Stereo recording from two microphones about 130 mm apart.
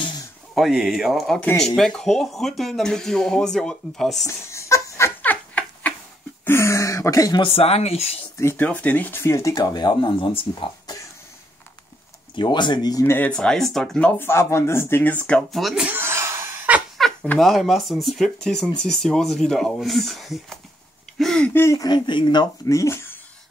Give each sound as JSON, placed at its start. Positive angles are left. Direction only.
{"t": 0.6, "sound": "speech", "side_deg": -5}
{"t": 4.3, "sound": "a sound", "side_deg": 20}
{"t": 6.4, "sound": "speech", "side_deg": 20}
{"t": 7.4, "sound": "speech", "side_deg": 50}
{"t": 8.4, "sound": "speech", "side_deg": 15}
{"t": 12.4, "sound": "speech", "side_deg": 35}
{"t": 13.0, "sound": "speech", "side_deg": 20}
{"t": 13.3, "sound": "speech", "side_deg": 5}
{"t": 15.2, "sound": "speech", "side_deg": 5}
{"t": 16.0, "sound": "a sound", "side_deg": -20}
{"t": 17.0, "sound": "speech", "side_deg": 5}
{"t": 21.5, "sound": "speech", "side_deg": 20}
{"t": 21.8, "sound": "speech", "side_deg": 35}